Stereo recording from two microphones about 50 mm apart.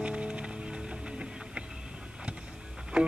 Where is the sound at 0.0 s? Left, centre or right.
Right.